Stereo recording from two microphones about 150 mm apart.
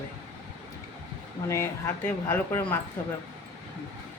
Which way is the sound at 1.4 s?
20° left (ahead or behind).